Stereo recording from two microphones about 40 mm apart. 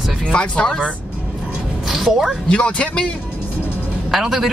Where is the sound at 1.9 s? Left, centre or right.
Centre.